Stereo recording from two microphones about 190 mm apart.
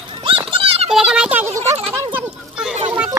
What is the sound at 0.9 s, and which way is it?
A child's voice, 5° right (ahead or behind).